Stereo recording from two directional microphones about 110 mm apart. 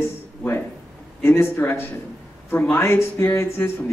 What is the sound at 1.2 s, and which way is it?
Speech, 20° left (ahead or behind).